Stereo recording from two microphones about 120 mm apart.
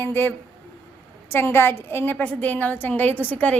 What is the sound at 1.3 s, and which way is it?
A woman's voice, 20° left (ahead or behind).